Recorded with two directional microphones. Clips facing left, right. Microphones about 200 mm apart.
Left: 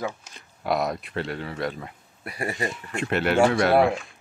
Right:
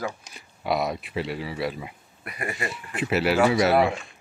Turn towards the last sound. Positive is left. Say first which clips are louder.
# left 1 dB
turn(degrees=0)  # may be behind; listen again after turning